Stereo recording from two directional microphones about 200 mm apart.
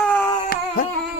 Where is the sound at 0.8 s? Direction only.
45° left (ahead or behind).